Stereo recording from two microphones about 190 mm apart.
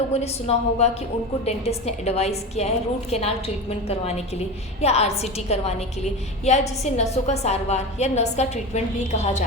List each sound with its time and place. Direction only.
0.1 s a woman's voice: 35° left (ahead or behind)